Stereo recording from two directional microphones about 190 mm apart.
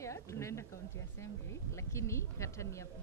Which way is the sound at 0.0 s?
15° left (ahead or behind).